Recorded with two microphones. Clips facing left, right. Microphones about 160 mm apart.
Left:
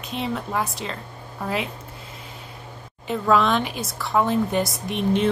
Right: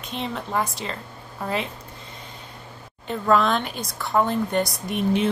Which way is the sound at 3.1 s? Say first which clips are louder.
Left 1 dB; centre (ahead or behind).